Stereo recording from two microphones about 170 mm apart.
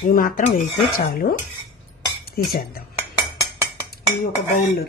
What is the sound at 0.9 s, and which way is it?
Speech, 55° left (ahead or behind).